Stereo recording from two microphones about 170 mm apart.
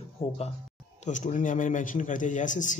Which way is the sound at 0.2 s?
15° left (ahead or behind).